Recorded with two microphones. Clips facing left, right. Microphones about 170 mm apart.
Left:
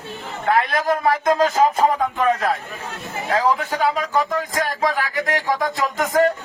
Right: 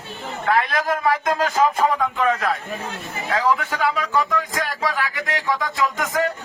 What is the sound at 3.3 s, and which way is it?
Speech, 35° left (ahead or behind).